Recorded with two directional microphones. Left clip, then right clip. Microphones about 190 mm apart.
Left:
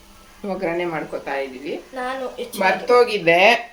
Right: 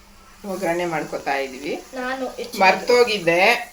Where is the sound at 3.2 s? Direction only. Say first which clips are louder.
Left 3 dB; 20° left (ahead or behind).